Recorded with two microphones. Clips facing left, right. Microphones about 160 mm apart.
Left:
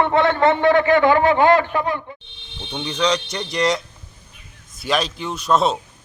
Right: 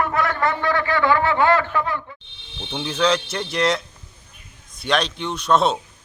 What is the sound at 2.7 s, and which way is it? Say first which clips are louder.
A man's voice: right 1 dB; 5° right (ahead or behind).